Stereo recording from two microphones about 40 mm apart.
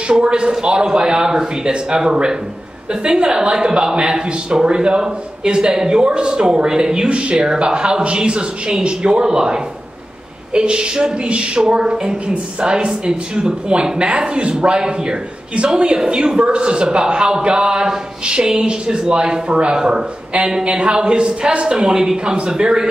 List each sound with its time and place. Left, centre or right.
0.1 s speech: right